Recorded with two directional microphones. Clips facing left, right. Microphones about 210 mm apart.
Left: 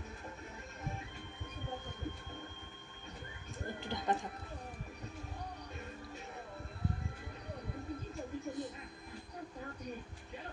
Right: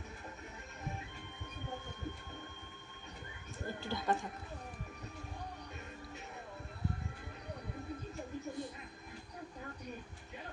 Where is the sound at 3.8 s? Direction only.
20° left (ahead or behind).